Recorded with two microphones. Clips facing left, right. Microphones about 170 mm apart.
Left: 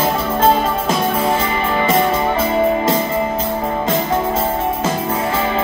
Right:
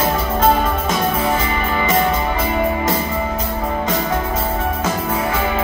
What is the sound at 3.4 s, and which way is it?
Music, 30° left (ahead or behind).